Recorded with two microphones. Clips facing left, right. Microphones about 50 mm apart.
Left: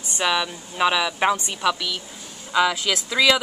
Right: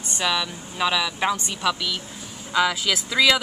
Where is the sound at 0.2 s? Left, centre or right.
Centre.